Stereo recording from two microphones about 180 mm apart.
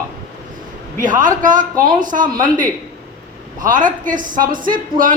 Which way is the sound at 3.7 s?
45° right (ahead or behind).